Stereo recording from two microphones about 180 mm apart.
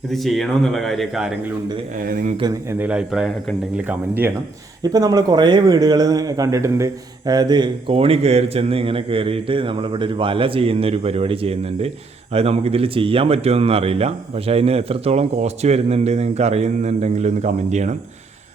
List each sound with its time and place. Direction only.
0.1 s speech: centre (ahead or behind)
2.0 s speech: 50° right (ahead or behind)
2.4 s speech: 15° right (ahead or behind)
4.8 s a man's voice: 20° right (ahead or behind); by 17.9 s 40° right (ahead or behind)